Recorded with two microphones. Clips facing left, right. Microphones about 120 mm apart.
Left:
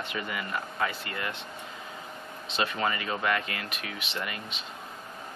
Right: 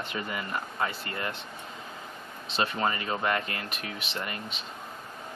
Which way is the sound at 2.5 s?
35° right (ahead or behind).